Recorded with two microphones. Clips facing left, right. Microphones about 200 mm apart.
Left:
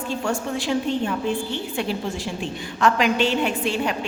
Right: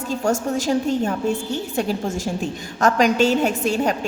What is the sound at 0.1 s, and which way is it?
A woman's voice, 40° right (ahead or behind).